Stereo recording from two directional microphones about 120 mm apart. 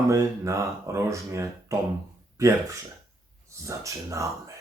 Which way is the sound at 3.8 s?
25° right (ahead or behind).